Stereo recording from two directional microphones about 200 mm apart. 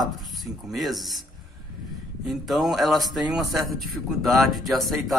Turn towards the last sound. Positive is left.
turn(degrees=0)  # may be behind; listen again after turning